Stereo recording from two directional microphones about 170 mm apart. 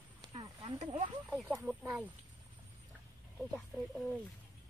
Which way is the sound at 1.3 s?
10° right (ahead or behind).